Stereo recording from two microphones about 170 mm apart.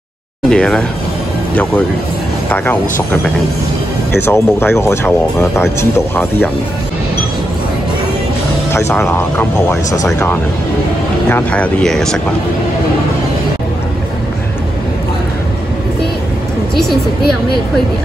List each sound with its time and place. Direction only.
0.5 s speech: 5° left (ahead or behind)
2.5 s speech: 10° left (ahead or behind)
4.2 s speech: 15° left (ahead or behind)
8.7 s speech: 15° left (ahead or behind)
11.2 s speech: 10° left (ahead or behind)